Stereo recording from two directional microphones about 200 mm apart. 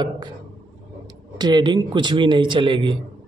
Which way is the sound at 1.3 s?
20° right (ahead or behind).